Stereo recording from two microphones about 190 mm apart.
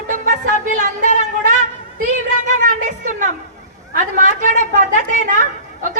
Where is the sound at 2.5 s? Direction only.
45° right (ahead or behind).